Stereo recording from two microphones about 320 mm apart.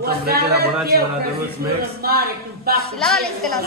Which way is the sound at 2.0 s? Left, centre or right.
Right.